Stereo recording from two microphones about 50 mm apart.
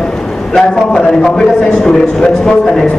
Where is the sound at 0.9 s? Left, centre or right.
Centre.